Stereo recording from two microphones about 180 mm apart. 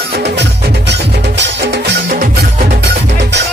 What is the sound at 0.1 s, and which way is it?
Music, 65° right (ahead or behind).